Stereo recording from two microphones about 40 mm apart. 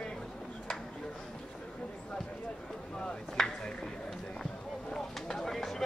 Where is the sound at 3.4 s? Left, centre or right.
Centre.